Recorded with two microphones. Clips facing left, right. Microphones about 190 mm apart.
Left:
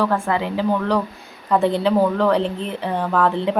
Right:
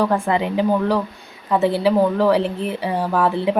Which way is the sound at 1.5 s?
5° right (ahead or behind).